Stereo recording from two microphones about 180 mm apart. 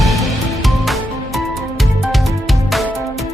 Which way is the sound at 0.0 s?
Centre (ahead or behind).